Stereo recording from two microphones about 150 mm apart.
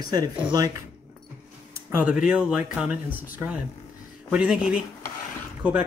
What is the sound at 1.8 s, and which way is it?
Speech, 10° right (ahead or behind).